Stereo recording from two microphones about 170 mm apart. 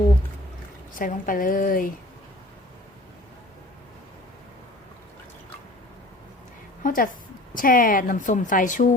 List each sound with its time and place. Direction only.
0.9 s a woman's voice: 55° left (ahead or behind)
6.8 s a woman's voice: 55° left (ahead or behind)